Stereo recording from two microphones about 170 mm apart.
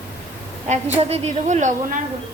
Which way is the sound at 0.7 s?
40° right (ahead or behind).